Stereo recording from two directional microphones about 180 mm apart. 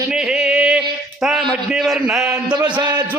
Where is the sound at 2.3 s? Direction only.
25° right (ahead or behind).